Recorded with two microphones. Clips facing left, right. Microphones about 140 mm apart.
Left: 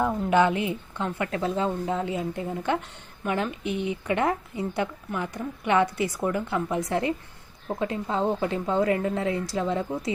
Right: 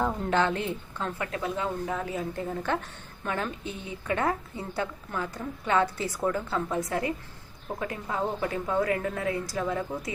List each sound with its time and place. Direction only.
0.0 s a woman's voice: 10° left (ahead or behind)
1.3 s a woman's voice: 30° left (ahead or behind)